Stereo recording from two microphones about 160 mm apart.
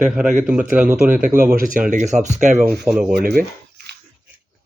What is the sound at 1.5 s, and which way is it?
Speech, 55° right (ahead or behind).